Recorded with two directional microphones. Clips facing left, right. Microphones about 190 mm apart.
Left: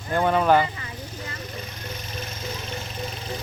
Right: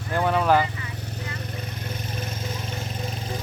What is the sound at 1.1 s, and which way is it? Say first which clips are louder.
Vehicle: right 2 dB; 60° right (ahead or behind).